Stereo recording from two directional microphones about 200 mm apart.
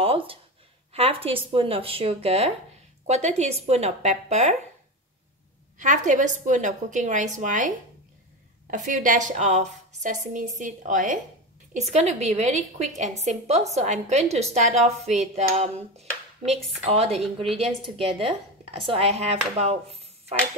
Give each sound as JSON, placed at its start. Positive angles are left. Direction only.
{"t": 0.0, "sound": "a sound", "side_deg": -30}
{"t": 0.9, "sound": "a woman's voice", "side_deg": -30}
{"t": 5.8, "sound": "a woman's voice", "side_deg": -40}